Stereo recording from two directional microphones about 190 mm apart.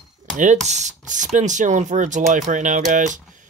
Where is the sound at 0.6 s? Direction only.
40° right (ahead or behind).